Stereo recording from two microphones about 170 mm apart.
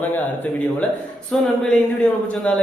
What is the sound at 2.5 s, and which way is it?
Speech, 10° left (ahead or behind).